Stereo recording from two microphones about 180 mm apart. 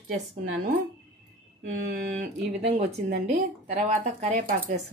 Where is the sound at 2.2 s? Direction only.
40° right (ahead or behind).